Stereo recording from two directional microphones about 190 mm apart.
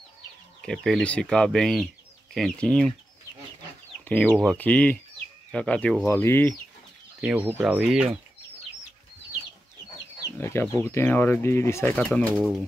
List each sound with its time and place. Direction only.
0.6 s speech: centre (ahead or behind)
4.0 s chicken: 10° left (ahead or behind)
4.3 s speech: 5° right (ahead or behind)
4.6 s speech: 10° left (ahead or behind)
7.2 s speech: 5° right (ahead or behind)
10.4 s speech: 15° left (ahead or behind)
12.4 s speech: 5° right (ahead or behind)